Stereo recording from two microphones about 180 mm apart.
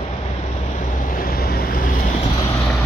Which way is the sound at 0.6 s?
45° left (ahead or behind).